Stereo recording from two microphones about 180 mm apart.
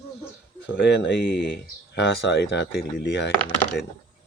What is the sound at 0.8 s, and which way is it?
Speech, 80° left.